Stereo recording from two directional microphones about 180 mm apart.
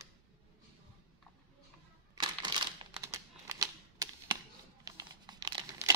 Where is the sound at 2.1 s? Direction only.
25° right (ahead or behind).